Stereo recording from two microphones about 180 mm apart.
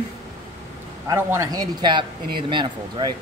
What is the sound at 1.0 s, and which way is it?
Speech, 15° right (ahead or behind).